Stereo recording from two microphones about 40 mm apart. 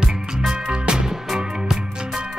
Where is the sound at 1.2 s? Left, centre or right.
Centre.